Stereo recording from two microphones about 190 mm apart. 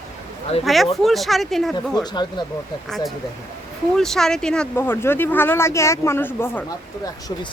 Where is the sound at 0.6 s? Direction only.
Centre (ahead or behind).